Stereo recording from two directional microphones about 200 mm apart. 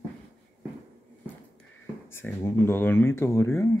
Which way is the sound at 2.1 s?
10° left (ahead or behind).